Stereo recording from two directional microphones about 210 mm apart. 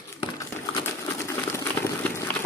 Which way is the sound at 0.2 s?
15° left (ahead or behind).